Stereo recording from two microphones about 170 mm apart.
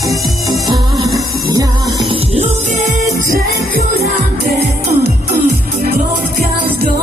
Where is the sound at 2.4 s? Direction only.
45° right (ahead or behind).